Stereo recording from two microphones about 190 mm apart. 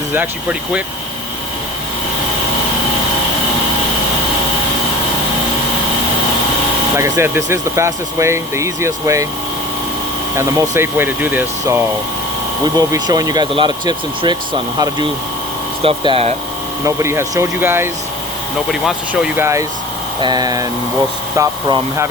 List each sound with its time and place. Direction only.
0.1 s speech: 10° right (ahead or behind)
6.9 s speech: 15° right (ahead or behind)
10.3 s speech: 10° right (ahead or behind)
12.6 s speech: 20° right (ahead or behind)
15.8 s speech: 30° right (ahead or behind)
16.8 s speech: 15° right (ahead or behind)